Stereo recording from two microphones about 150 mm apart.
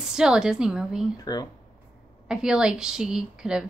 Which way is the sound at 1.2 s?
25° left (ahead or behind).